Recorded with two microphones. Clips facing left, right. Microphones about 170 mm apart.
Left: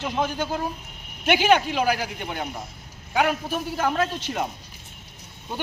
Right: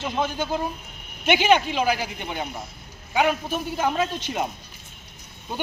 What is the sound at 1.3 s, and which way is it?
A man's voice, 5° left (ahead or behind).